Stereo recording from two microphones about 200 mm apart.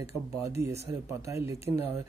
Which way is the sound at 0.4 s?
15° right (ahead or behind).